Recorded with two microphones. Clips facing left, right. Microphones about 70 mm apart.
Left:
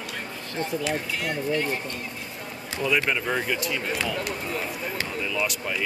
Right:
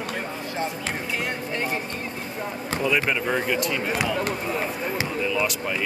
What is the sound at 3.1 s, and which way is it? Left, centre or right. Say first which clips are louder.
Speech: right 2 dB; centre.